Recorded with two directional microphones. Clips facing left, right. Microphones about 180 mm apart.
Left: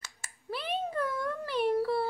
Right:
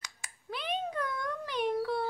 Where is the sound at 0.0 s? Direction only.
5° left (ahead or behind).